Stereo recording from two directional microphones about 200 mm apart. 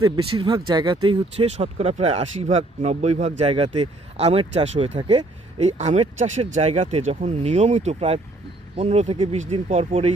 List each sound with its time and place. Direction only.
0.3 s speech: 25° right (ahead or behind)
4.9 s speech: 25° right (ahead or behind)
5.5 s speech: 35° right (ahead or behind)